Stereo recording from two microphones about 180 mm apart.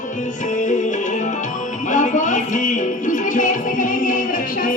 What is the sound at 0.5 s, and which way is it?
Music, 45° left (ahead or behind).